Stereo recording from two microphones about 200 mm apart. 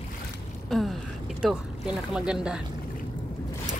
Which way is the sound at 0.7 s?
Centre (ahead or behind).